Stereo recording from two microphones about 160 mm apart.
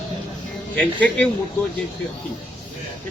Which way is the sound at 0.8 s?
10° left (ahead or behind).